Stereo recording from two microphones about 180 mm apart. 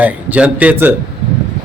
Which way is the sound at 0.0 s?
10° right (ahead or behind).